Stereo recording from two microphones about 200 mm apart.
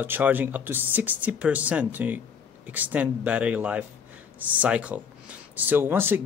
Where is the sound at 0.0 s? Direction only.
10° right (ahead or behind).